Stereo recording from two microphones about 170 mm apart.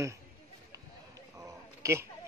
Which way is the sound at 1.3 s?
15° right (ahead or behind).